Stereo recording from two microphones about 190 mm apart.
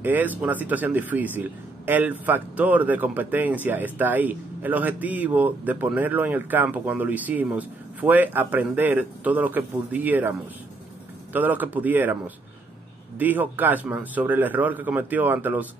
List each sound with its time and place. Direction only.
0.0 s speech: 10° right (ahead or behind)
11.3 s speech: 10° right (ahead or behind)
13.2 s speech: 10° right (ahead or behind)